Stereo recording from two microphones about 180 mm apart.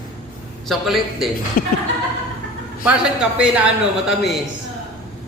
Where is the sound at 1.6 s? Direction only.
55° left (ahead or behind).